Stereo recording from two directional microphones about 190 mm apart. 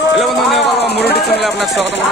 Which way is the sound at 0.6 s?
60° left (ahead or behind).